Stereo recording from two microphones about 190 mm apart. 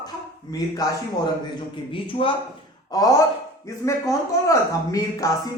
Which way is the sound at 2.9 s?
15° left (ahead or behind).